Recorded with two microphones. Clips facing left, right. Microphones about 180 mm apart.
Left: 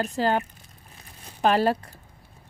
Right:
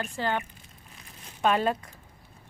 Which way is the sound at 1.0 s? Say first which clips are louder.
Left 3 dB; 35° left (ahead or behind).